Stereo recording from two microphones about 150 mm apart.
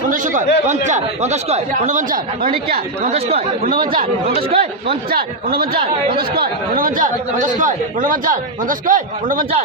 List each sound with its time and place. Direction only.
0.1 s a man's voice: 60° right (ahead or behind); by 2.8 s 75° right (ahead or behind)
3.1 s speech: 45° right (ahead or behind)
5.1 s a man's voice: 85° right; by 9.5 s 65° right (ahead or behind)